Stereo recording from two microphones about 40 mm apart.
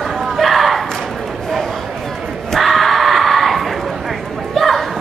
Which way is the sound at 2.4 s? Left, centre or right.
Centre.